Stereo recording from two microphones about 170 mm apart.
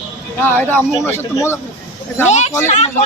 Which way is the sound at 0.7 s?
15° left (ahead or behind).